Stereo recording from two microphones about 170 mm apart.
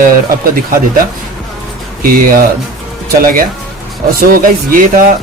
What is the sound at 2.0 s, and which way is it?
Speech, 55° right (ahead or behind).